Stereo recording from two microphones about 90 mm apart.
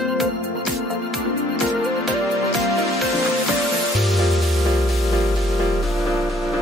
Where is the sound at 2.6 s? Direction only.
Centre (ahead or behind).